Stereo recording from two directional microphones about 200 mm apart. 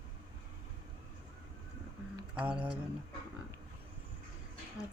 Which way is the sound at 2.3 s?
5° right (ahead or behind).